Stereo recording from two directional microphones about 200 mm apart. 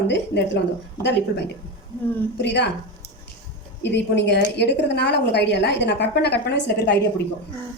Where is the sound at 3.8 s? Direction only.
60° left (ahead or behind).